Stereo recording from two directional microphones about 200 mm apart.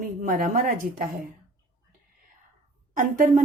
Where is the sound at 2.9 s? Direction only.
40° right (ahead or behind).